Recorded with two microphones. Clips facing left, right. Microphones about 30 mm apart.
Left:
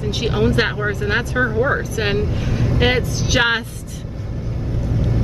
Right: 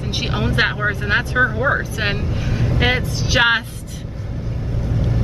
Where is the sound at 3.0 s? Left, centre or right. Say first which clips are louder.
Left 1 dB; right.